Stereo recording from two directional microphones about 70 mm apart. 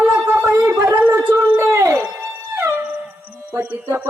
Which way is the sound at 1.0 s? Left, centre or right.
Right.